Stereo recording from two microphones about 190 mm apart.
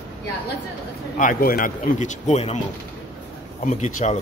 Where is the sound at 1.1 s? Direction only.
45° left (ahead or behind).